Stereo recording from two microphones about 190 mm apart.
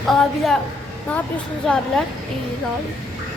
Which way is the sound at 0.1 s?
Centre (ahead or behind).